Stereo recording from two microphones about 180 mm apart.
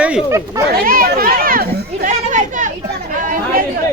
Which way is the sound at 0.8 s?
55° right (ahead or behind).